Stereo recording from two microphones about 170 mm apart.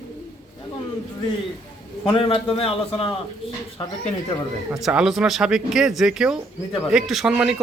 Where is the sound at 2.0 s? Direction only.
30° left (ahead or behind).